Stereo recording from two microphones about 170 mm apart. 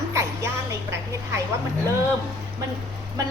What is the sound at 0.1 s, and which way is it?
Music, 15° right (ahead or behind).